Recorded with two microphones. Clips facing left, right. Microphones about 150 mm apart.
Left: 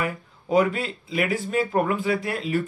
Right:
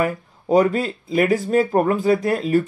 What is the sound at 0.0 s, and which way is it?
Speech, 40° right (ahead or behind).